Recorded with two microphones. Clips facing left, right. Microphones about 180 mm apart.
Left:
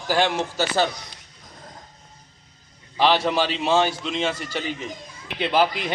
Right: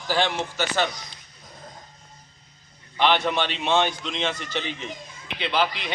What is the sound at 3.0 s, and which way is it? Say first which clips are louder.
Speech: left 2 dB; 35° left (ahead or behind).